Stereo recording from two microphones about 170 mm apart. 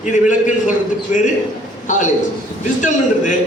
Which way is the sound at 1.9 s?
45° left (ahead or behind).